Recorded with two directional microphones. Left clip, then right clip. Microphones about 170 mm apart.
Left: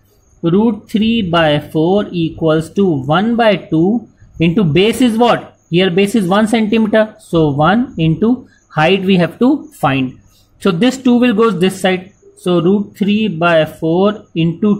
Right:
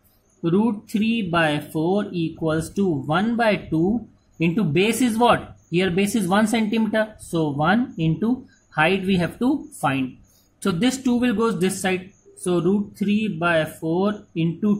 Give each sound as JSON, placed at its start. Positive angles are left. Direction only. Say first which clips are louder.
{"t": 0.4, "sound": "speech", "louder": "left 8 dB", "side_deg": 20}